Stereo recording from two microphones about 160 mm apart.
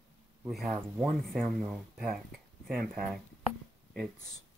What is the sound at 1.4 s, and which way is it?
Speech, 60° right (ahead or behind).